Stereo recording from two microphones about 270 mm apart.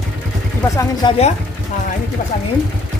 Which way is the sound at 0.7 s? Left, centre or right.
Centre.